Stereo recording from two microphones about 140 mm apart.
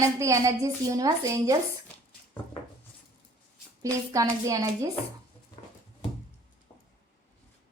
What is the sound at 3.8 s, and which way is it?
A woman's voice, 25° right (ahead or behind).